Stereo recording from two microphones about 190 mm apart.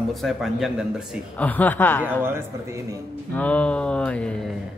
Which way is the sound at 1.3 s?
10° left (ahead or behind).